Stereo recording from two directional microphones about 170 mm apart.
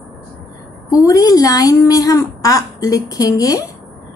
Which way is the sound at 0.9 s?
20° left (ahead or behind).